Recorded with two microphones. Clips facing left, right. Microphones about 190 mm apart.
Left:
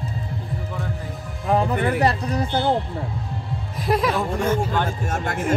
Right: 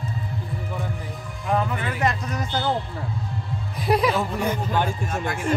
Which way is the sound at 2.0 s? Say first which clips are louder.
Left 4 dB; 35° left (ahead or behind).